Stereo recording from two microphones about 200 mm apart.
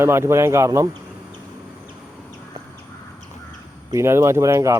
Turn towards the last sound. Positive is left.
turn(degrees=-15)  # may be behind; listen again after turning